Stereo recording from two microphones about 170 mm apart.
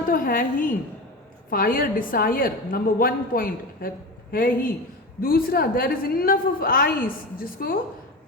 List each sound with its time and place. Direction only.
0.1 s a woman's voice: 55° left (ahead or behind)